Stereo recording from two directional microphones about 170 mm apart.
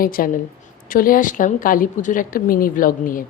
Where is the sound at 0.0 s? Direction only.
60° left (ahead or behind).